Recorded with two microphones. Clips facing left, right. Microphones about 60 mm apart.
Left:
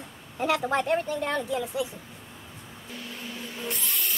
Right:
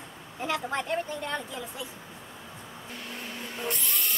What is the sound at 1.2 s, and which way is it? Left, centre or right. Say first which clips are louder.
Speech: left 6 dB; left.